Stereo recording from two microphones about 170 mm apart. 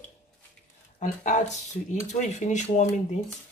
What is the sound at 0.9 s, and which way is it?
Speech, 45° left (ahead or behind).